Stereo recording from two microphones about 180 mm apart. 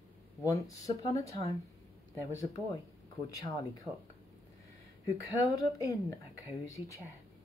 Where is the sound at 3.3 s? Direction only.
20° left (ahead or behind).